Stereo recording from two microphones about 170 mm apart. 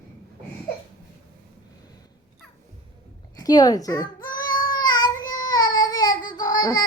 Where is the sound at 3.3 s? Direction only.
20° left (ahead or behind).